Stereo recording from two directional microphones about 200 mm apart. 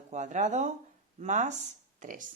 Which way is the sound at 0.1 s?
35° right (ahead or behind).